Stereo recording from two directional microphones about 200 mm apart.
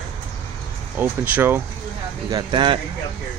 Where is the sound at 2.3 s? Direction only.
25° right (ahead or behind).